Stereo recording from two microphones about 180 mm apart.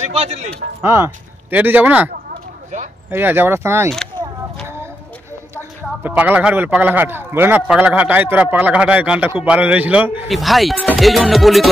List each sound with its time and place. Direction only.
0.0 s speech: 35° right (ahead or behind)
0.8 s speech: 15° right (ahead or behind)
3.1 s a man's voice: 10° right (ahead or behind)
5.6 s a man's voice: 10° right (ahead or behind)